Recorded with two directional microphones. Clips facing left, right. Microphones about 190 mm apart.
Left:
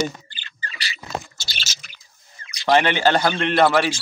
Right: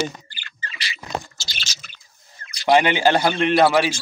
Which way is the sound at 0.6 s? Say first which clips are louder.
Even; 35° left (ahead or behind).